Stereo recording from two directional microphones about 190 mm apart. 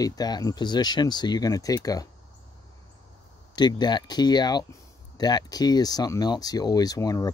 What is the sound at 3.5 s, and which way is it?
Speech, 25° left (ahead or behind).